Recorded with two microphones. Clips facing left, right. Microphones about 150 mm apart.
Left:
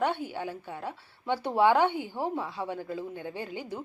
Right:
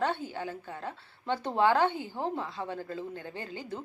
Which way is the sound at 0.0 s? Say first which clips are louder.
Left 2 dB; 15° left (ahead or behind).